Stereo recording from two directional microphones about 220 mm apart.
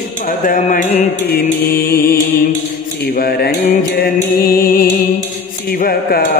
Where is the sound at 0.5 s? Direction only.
35° left (ahead or behind).